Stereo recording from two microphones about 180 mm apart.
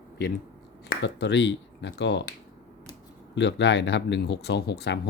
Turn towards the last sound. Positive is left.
turn(degrees=70)  # may be behind; listen again after turning